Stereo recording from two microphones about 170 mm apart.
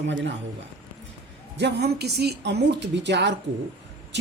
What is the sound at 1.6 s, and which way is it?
A woman's voice, 80° right.